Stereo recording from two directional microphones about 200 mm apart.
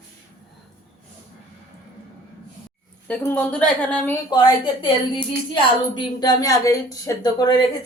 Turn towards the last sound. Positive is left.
turn(degrees=20)  # may be behind; listen again after turning